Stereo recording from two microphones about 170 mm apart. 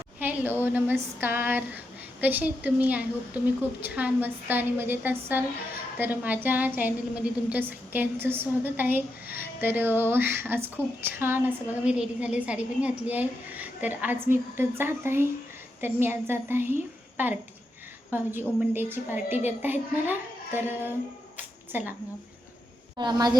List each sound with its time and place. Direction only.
0.2 s a woman's voice: 10° right (ahead or behind)
21.3 s a sound: 10° right (ahead or behind)
23.0 s a woman's voice: 25° right (ahead or behind)